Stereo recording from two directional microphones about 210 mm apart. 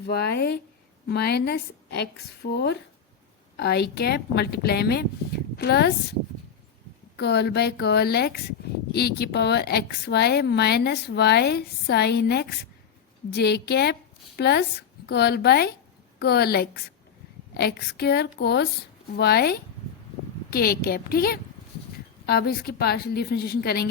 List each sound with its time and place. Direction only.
0.0 s speech: 50° left (ahead or behind)
7.2 s a woman's voice: 50° left (ahead or behind)